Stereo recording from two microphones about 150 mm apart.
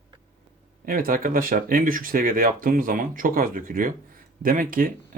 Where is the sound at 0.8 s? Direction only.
70° right (ahead or behind).